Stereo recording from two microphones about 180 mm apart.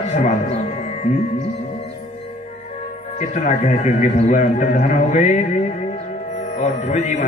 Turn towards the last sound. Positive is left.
turn(degrees=35)  # may be behind; listen again after turning